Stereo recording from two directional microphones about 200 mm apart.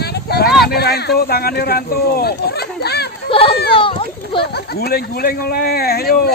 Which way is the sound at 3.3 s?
25° left (ahead or behind).